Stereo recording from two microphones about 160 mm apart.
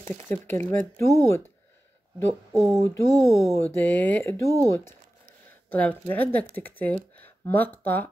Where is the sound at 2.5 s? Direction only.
Centre (ahead or behind).